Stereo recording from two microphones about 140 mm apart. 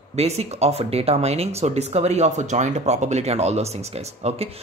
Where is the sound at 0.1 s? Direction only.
50° right (ahead or behind).